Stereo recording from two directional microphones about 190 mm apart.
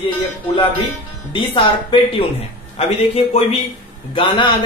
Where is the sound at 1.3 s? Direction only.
25° left (ahead or behind).